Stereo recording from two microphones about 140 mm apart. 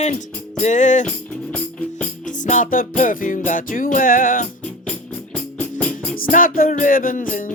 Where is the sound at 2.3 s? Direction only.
65° left (ahead or behind).